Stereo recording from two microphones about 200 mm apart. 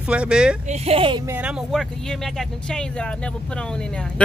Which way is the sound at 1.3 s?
5° right (ahead or behind).